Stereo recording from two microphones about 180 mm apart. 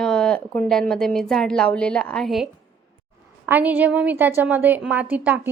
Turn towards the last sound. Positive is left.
turn(degrees=-10)  # may be behind; listen again after turning